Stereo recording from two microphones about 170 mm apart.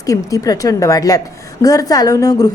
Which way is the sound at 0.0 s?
20° left (ahead or behind).